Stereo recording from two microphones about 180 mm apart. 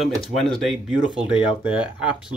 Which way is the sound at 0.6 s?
Centre (ahead or behind).